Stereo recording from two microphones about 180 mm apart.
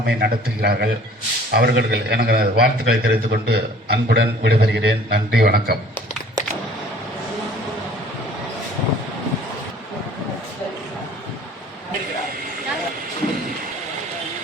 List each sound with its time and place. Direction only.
0.0 s a man's voice: 60° right (ahead or behind)